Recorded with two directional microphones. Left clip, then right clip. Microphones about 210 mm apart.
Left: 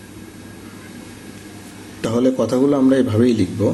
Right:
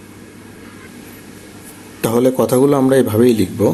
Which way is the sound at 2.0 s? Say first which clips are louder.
Right 4 dB; 30° right (ahead or behind).